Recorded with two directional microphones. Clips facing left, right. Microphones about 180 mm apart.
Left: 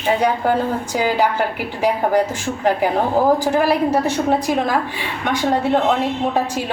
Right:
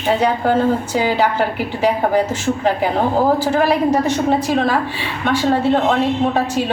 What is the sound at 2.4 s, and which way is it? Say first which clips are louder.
Speech: right 1 dB; 10° left (ahead or behind).